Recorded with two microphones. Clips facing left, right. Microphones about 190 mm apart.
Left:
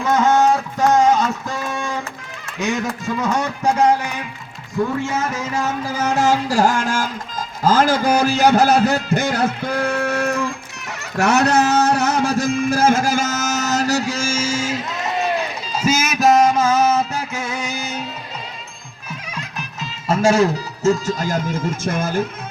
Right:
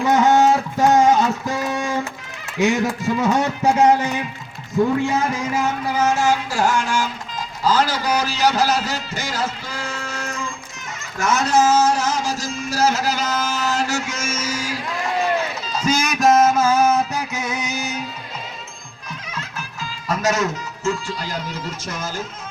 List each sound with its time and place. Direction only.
0.0 s music: 20° right (ahead or behind)
5.0 s speech: 15° right (ahead or behind)
6.2 s a sound: 40° left (ahead or behind)
7.6 s a man's voice: 45° left (ahead or behind); by 10.5 s 65° left (ahead or behind)
11.2 s a sound: 65° left (ahead or behind); by 16.9 s 10° right (ahead or behind)
17.3 s music: 20° right (ahead or behind)
19.3 s music: 15° left (ahead or behind); by 22.3 s 55° left (ahead or behind)